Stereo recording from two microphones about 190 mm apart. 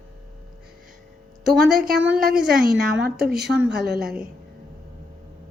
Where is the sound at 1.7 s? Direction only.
50° right (ahead or behind).